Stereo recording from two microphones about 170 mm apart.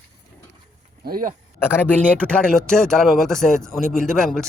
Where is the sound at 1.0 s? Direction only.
55° right (ahead or behind).